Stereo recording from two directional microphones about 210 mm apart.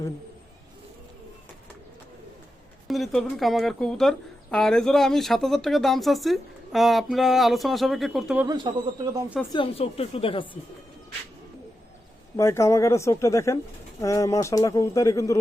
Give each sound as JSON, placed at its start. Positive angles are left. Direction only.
{"t": 2.8, "sound": "speech", "side_deg": 0}
{"t": 8.4, "sound": "speech", "side_deg": -20}
{"t": 9.5, "sound": "speech", "side_deg": 25}
{"t": 12.4, "sound": "speech", "side_deg": 15}